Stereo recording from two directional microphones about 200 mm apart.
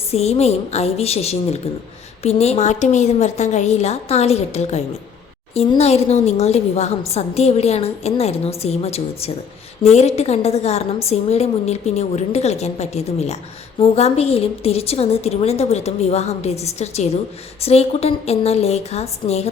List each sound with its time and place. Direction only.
0.1 s a woman's voice: 30° left (ahead or behind)